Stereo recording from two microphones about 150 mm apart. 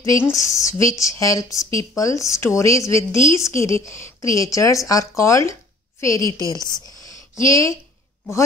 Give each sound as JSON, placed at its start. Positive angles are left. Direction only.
{"t": 0.3, "sound": "speech", "side_deg": 20}